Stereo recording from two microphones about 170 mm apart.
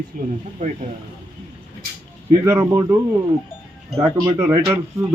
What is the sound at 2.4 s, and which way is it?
Speech, 15° right (ahead or behind).